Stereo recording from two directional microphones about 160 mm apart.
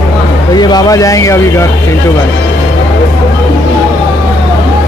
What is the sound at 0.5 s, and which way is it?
Speech, 25° left (ahead or behind).